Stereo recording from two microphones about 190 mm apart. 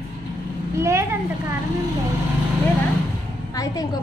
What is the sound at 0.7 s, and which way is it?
Speech, 15° right (ahead or behind).